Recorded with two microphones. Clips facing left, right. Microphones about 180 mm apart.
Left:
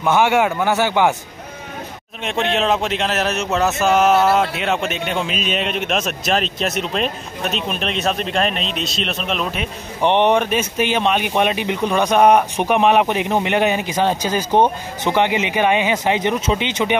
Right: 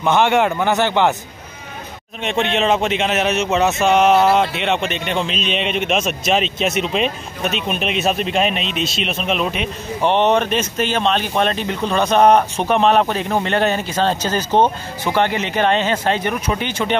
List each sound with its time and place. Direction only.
0.0 s speech: 5° left (ahead or behind)
2.2 s speech: centre (ahead or behind)
10.0 s speech: 15° left (ahead or behind)